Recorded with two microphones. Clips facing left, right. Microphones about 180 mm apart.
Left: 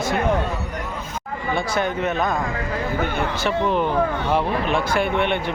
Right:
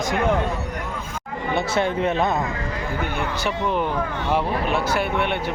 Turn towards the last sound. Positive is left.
turn(degrees=-5)  # may be behind; listen again after turning